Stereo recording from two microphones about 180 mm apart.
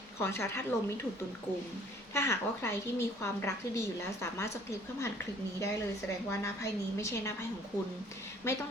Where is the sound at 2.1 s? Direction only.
15° left (ahead or behind).